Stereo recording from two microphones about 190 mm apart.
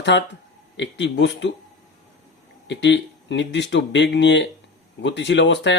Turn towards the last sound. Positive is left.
turn(degrees=65)  # may be behind; listen again after turning